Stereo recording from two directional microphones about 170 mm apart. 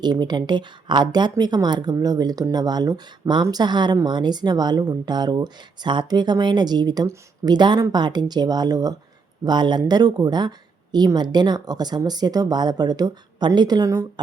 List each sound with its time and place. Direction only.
0.0 s speech: 25° right (ahead or behind)